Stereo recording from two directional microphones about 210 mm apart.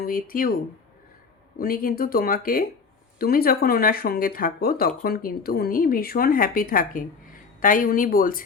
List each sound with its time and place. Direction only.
0.0 s speech: 45° left (ahead or behind)
1.5 s speech: 45° left (ahead or behind)